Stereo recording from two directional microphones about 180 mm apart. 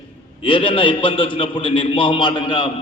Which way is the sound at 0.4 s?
30° left (ahead or behind).